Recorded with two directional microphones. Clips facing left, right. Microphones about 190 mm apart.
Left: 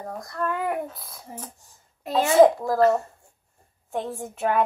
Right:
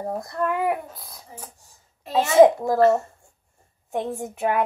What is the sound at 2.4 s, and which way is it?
A child's voice, 20° right (ahead or behind).